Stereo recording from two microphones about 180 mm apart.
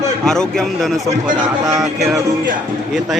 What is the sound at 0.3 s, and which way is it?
A man's voice, 5° left (ahead or behind).